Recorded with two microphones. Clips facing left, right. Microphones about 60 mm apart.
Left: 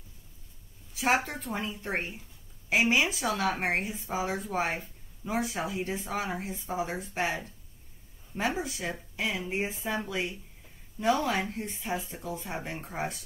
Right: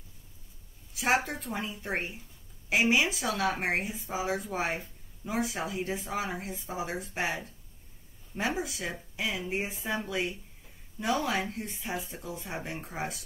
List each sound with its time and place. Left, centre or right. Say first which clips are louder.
0.9 s speech: left 1 dB; centre
9.5 s speech: left 1 dB; left
10.0 s speech: right 1 dB; centre